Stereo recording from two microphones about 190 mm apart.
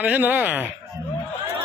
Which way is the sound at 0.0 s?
5° right (ahead or behind).